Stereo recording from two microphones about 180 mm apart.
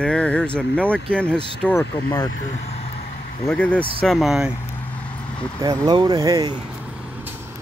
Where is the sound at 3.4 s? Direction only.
10° left (ahead or behind).